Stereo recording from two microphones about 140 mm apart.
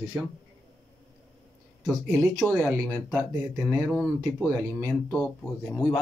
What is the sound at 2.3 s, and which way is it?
Speech, centre (ahead or behind).